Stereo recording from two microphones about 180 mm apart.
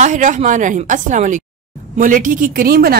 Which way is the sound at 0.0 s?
45° right (ahead or behind).